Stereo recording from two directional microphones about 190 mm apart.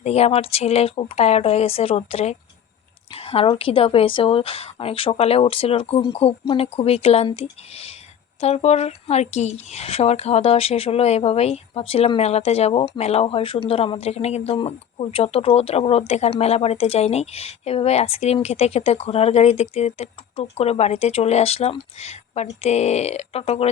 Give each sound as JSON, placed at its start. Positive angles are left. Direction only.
{"t": 0.0, "sound": "speech", "side_deg": 35}